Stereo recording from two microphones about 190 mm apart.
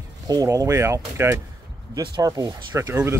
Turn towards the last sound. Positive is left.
turn(degrees=-15)  # may be behind; listen again after turning